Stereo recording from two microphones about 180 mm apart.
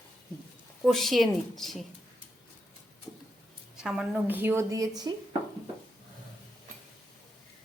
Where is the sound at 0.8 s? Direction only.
Centre (ahead or behind).